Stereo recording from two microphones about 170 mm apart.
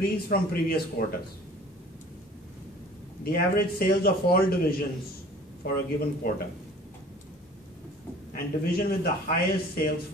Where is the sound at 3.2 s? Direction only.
65° left (ahead or behind).